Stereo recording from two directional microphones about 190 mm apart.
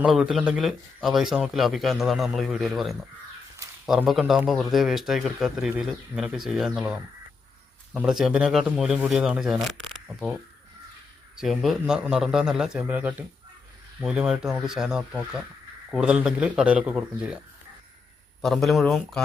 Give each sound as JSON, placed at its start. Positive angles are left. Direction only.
{"t": 0.0, "sound": "speech", "side_deg": 0}
{"t": 8.2, "sound": "speech", "side_deg": -5}
{"t": 18.4, "sound": "speech", "side_deg": 0}